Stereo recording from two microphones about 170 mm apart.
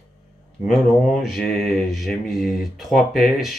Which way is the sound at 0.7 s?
Centre (ahead or behind).